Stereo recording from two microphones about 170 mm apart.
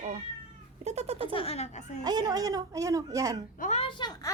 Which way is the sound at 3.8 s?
25° left (ahead or behind).